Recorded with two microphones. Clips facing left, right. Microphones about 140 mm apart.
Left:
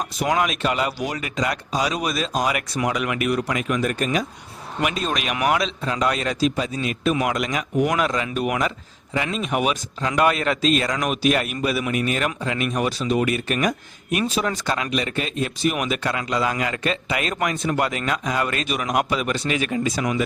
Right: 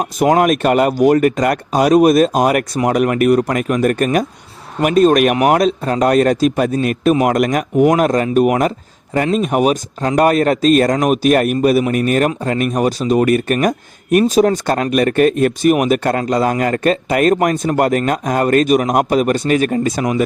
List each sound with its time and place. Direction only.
0.0 s speech: 50° right (ahead or behind)